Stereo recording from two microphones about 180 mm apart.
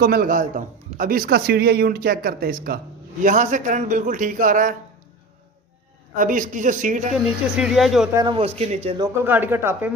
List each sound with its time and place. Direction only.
0.0 s speech: 55° right (ahead or behind)
6.1 s speech: 45° right (ahead or behind)
7.5 s speech: 5° right (ahead or behind)
8.1 s a man's voice: 20° right (ahead or behind)
8.4 s speech: 35° right (ahead or behind)
9.2 s speech: 10° right (ahead or behind)